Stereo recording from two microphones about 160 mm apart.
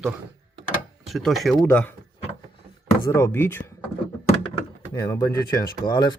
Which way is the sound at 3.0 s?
20° left (ahead or behind).